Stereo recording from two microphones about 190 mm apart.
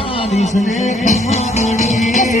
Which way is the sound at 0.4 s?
40° left (ahead or behind).